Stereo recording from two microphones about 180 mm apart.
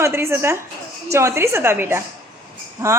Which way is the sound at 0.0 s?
15° right (ahead or behind).